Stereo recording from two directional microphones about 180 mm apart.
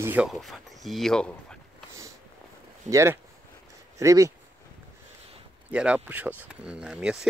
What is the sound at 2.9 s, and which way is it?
Speech, 15° right (ahead or behind).